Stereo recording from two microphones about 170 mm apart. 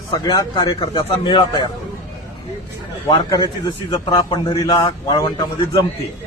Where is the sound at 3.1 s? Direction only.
25° left (ahead or behind).